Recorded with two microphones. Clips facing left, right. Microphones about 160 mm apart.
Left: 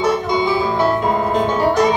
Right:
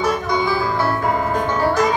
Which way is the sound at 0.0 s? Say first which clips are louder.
Left 3 dB; 25° left (ahead or behind).